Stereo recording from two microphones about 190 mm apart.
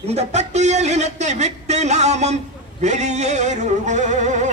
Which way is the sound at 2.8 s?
35° right (ahead or behind).